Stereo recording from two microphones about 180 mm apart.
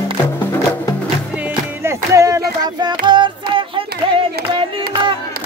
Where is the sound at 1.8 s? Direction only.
15° right (ahead or behind).